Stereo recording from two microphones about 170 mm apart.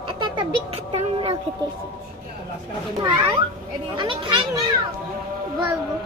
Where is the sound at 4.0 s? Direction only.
30° right (ahead or behind).